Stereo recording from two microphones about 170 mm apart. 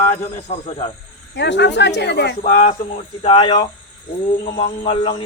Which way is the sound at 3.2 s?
30° left (ahead or behind).